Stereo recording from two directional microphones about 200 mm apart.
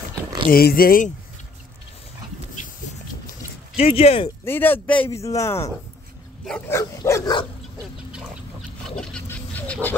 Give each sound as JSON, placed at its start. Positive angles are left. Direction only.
{"t": 0.5, "sound": "speech", "side_deg": 50}
{"t": 3.7, "sound": "speech", "side_deg": 30}
{"t": 4.5, "sound": "speech", "side_deg": 10}
{"t": 6.7, "sound": "speech", "side_deg": 15}
{"t": 8.8, "sound": "a sound", "side_deg": 5}